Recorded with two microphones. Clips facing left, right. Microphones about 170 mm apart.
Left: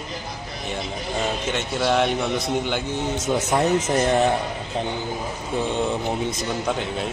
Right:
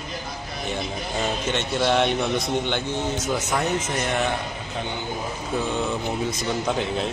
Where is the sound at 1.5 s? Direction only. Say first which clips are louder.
Even; 5° left (ahead or behind).